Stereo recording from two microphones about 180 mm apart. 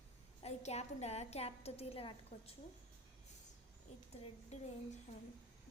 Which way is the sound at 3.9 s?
35° left (ahead or behind).